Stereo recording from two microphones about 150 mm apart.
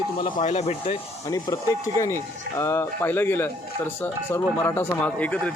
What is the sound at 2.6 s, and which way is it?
Speech, 20° left (ahead or behind).